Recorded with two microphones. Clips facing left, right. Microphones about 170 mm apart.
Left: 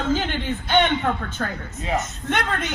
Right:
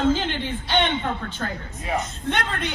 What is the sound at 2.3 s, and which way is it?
Speech, 50° left (ahead or behind).